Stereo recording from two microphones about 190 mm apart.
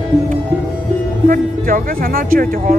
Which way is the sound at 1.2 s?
50° right (ahead or behind).